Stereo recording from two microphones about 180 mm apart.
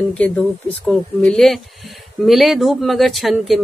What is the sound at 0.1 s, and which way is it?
Speech, 5° left (ahead or behind).